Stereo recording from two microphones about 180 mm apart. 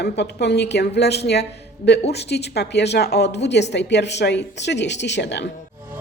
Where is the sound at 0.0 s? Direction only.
65° left (ahead or behind).